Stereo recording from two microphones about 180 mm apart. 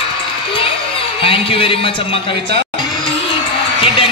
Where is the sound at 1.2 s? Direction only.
30° left (ahead or behind).